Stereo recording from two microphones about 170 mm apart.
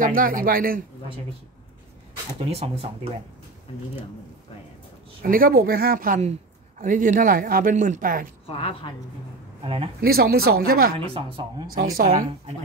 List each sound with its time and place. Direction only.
0.0 s speech: 55° right (ahead or behind)
2.5 s speech: 35° right (ahead or behind)
5.2 s speech: 55° right (ahead or behind)
8.5 s a woman's voice: 35° left (ahead or behind)
9.6 s speech: 35° right (ahead or behind)
9.9 s speech: 65° right (ahead or behind)
11.1 s speech: 30° right (ahead or behind)
11.8 s speech: 55° right (ahead or behind)